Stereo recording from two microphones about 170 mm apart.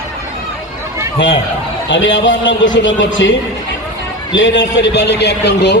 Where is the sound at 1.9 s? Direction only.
90° left.